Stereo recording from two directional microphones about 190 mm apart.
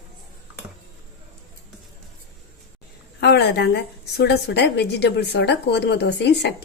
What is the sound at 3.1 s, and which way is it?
A woman's voice, 60° left (ahead or behind).